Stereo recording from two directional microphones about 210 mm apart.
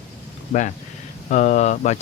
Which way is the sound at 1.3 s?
35° left (ahead or behind).